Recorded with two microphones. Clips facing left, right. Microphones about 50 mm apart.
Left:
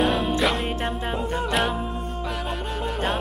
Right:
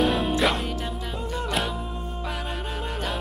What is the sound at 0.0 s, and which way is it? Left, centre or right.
Music, centre.